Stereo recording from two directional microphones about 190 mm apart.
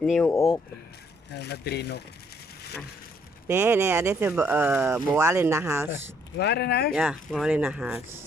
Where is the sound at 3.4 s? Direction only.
15° right (ahead or behind).